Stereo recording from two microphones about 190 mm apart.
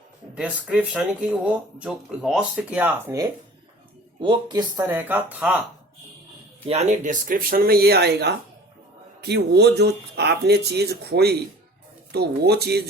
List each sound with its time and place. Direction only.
0.3 s speech: 5° right (ahead or behind)
4.2 s speech: 25° right (ahead or behind)
4.9 s speech: 10° right (ahead or behind)
6.7 s speech: 35° right (ahead or behind); by 12.8 s 55° right (ahead or behind)